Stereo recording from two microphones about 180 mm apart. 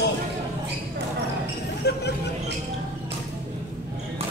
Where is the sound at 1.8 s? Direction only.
70° left (ahead or behind).